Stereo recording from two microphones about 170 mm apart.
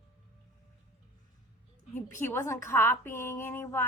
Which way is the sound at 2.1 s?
15° left (ahead or behind).